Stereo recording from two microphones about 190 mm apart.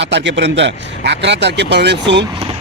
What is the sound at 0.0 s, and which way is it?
Speech, 70° right (ahead or behind).